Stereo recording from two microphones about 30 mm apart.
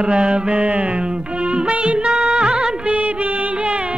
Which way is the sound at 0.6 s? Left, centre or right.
Right.